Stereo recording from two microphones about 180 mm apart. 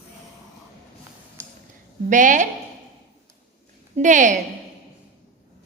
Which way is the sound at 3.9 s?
45° right (ahead or behind).